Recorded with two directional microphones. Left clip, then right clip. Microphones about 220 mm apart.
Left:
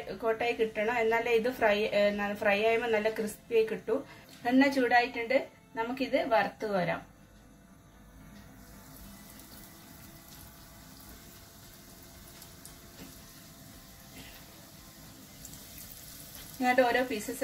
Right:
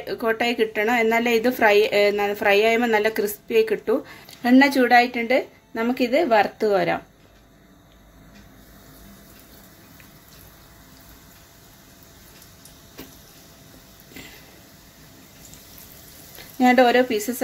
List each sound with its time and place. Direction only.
0.2 s a woman's voice: 40° right (ahead or behind)
16.6 s a woman's voice: 50° right (ahead or behind)